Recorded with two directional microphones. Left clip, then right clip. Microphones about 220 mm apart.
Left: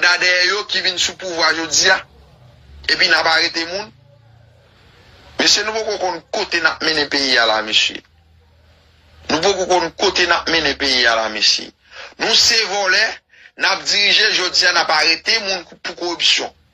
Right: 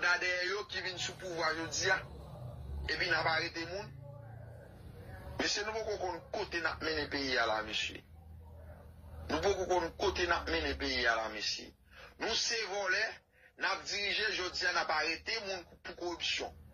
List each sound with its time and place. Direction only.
0.0 s a man's voice: 45° left (ahead or behind)
5.4 s a man's voice: 45° left (ahead or behind)
9.3 s a man's voice: 45° left (ahead or behind)